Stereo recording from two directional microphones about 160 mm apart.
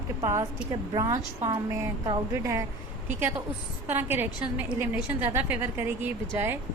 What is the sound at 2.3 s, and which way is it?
Speech, 20° right (ahead or behind).